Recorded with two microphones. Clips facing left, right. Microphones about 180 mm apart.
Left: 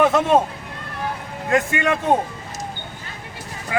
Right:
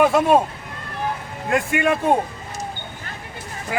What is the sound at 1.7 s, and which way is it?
Speech, 20° right (ahead or behind).